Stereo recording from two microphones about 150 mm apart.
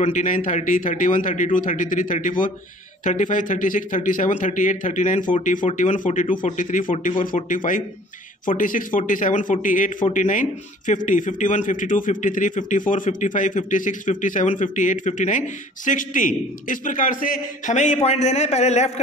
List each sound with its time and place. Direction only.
0.0 s a man's voice: 55° left (ahead or behind)